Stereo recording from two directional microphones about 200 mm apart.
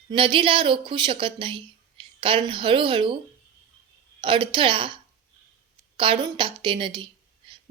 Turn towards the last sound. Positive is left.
turn(degrees=-25)  # may be behind; listen again after turning